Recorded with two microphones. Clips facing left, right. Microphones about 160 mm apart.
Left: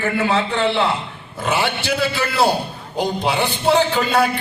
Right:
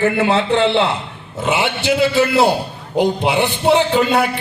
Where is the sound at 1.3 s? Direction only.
20° right (ahead or behind).